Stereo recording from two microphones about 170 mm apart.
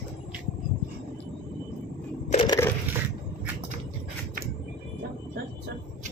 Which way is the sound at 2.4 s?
20° left (ahead or behind).